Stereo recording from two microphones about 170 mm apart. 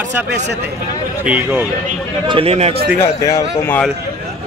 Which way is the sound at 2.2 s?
35° right (ahead or behind).